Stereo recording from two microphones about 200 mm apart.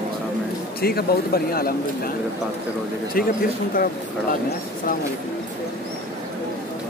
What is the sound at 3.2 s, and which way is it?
Speech, 45° left (ahead or behind).